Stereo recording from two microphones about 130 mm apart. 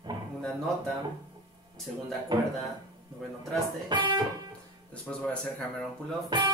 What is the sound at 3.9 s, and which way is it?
Speech, 35° right (ahead or behind).